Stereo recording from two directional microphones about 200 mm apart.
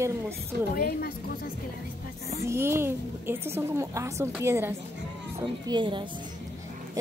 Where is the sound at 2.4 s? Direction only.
15° right (ahead or behind).